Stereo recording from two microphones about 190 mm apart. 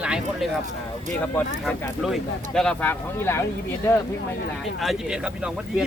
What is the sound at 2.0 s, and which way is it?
Speech, centre (ahead or behind).